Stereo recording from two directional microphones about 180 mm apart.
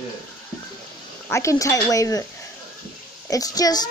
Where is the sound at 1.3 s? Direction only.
15° left (ahead or behind).